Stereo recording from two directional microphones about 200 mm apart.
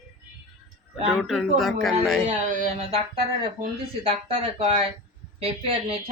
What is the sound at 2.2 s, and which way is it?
Speech, 40° right (ahead or behind).